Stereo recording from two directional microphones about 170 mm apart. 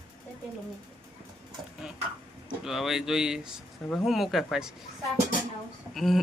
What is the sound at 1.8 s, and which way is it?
Speech, centre (ahead or behind).